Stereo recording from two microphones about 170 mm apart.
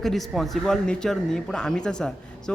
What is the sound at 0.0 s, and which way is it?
A man's voice, centre (ahead or behind).